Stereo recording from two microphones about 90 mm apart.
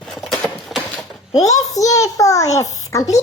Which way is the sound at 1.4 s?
40° left (ahead or behind).